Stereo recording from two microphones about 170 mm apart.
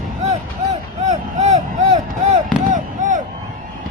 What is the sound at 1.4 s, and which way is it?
Artillery fire, 45° right (ahead or behind).